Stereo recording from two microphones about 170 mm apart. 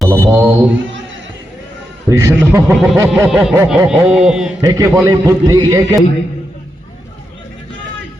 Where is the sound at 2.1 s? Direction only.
20° right (ahead or behind).